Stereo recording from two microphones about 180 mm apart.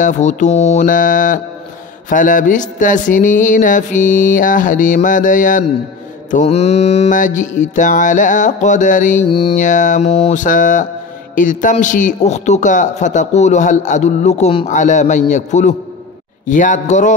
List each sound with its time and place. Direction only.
0.0 s speech: 40° left (ahead or behind)
6.3 s speech: 35° left (ahead or behind)
9.3 s mantra: 30° left (ahead or behind)
9.6 s speech: 45° left (ahead or behind)